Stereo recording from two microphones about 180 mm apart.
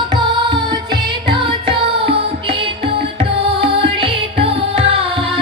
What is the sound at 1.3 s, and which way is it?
Music, 30° right (ahead or behind).